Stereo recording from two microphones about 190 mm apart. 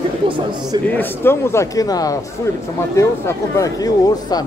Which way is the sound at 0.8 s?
10° left (ahead or behind).